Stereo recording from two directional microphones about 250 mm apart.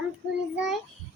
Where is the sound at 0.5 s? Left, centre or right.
Centre.